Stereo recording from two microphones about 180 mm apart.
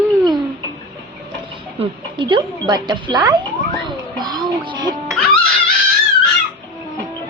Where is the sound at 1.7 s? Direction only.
30° right (ahead or behind).